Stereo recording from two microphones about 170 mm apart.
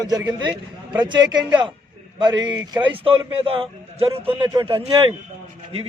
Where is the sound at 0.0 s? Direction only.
20° right (ahead or behind).